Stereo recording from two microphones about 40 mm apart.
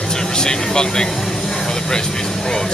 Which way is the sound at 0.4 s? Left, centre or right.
Centre.